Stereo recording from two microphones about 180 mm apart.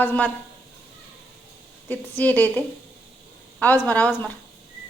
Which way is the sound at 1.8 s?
10° left (ahead or behind).